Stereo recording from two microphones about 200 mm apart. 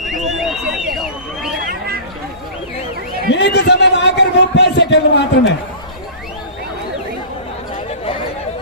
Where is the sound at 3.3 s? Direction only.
60° left (ahead or behind).